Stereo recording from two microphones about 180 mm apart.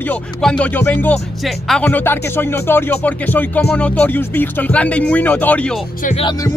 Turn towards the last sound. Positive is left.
turn(degrees=25)  # may be behind; listen again after turning